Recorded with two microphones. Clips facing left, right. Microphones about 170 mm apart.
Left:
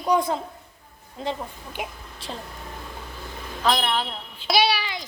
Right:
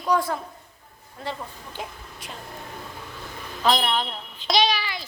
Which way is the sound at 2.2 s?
30° left (ahead or behind).